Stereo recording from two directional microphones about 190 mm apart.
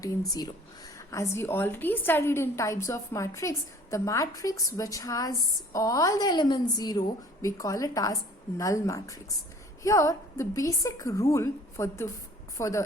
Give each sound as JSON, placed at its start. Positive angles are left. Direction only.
{"t": 0.0, "sound": "a woman's voice", "side_deg": 20}